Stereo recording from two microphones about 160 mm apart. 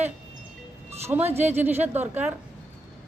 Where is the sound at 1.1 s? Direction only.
15° right (ahead or behind).